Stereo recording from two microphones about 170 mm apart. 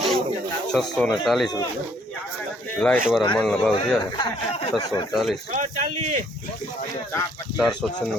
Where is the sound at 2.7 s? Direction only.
5° left (ahead or behind).